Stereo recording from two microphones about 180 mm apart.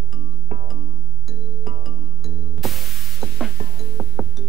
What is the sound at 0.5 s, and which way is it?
Music, 40° right (ahead or behind).